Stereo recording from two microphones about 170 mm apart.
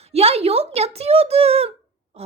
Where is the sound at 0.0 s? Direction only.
35° right (ahead or behind).